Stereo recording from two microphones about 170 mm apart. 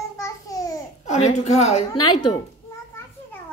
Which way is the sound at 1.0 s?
40° left (ahead or behind).